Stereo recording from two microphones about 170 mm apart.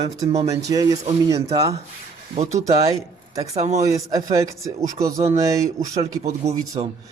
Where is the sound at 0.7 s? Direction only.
20° right (ahead or behind).